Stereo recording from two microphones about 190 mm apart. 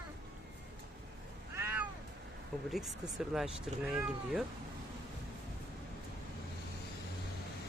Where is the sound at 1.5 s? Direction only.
10° right (ahead or behind).